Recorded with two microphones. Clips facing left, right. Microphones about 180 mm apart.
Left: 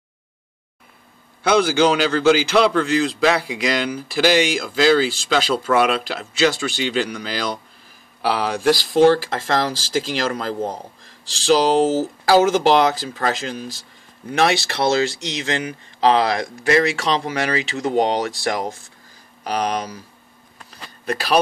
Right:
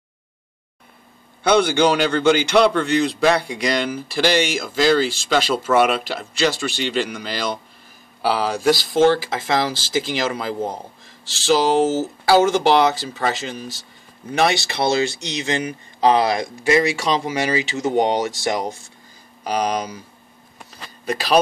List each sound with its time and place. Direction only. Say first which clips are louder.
1.4 s a man's voice: even; centre (ahead or behind)
15.0 s speech: left 1 dB; 90° left
16.9 s a man's voice: even; centre (ahead or behind)
21.0 s speech: right 1 dB; centre (ahead or behind)